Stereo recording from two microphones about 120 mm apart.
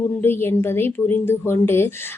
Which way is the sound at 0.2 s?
20° left (ahead or behind).